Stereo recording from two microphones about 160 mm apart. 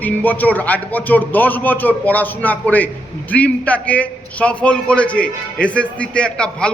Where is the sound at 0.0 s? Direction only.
10° left (ahead or behind).